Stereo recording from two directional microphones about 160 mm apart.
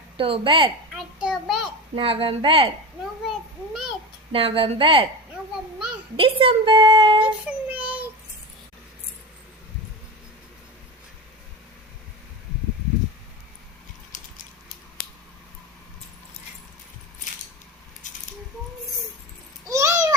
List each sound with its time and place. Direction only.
0.2 s speech: 35° right (ahead or behind)
0.9 s child singing: centre (ahead or behind)
1.6 s speech: 35° right (ahead or behind)
4.3 s speech: 35° right (ahead or behind)
6.1 s a woman's voice: 35° right (ahead or behind)
7.3 s child singing: 10° right (ahead or behind)
14.1 s mechanisms: 55° left (ahead or behind)
18.0 s a sound: 50° left (ahead or behind)
19.6 s a sound: 20° right (ahead or behind)